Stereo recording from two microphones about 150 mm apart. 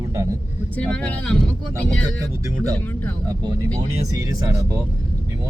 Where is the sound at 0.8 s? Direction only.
10° left (ahead or behind).